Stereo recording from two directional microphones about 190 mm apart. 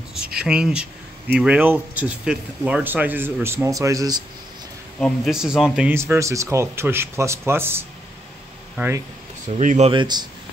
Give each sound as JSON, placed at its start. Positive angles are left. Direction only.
{"t": 0.4, "sound": "speech", "side_deg": -5}
{"t": 5.0, "sound": "speech", "side_deg": 0}
{"t": 9.5, "sound": "speech", "side_deg": -40}
{"t": 9.8, "sound": "speech", "side_deg": -25}